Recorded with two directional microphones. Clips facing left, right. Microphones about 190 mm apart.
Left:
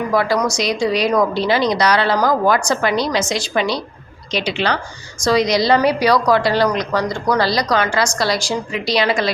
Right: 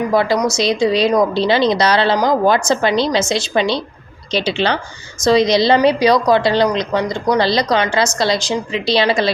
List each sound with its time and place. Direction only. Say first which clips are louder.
0.1 s a woman's voice: even; 25° right (ahead or behind)